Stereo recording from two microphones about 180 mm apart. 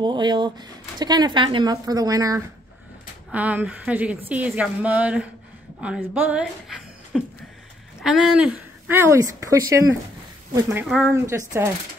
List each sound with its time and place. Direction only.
0.0 s speech: 25° right (ahead or behind)
3.3 s a woman's voice: 10° right (ahead or behind)